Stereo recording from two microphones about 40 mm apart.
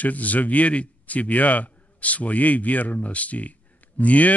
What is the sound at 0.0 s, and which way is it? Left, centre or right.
Speech, left.